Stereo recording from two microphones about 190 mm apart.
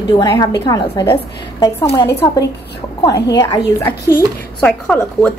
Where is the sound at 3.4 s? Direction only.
20° left (ahead or behind).